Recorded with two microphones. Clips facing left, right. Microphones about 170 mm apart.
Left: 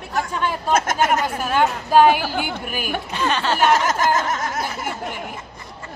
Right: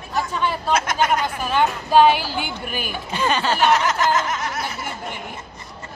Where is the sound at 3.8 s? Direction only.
45° left (ahead or behind).